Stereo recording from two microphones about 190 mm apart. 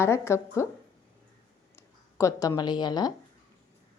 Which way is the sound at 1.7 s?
15° left (ahead or behind).